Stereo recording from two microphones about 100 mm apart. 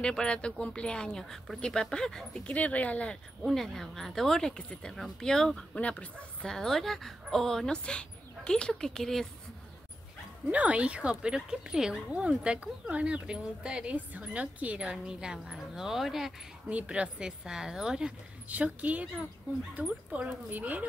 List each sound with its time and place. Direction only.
0.0 s speech: 10° left (ahead or behind)
3.4 s speech: 5° left (ahead or behind)
10.5 s speech: 15° right (ahead or behind)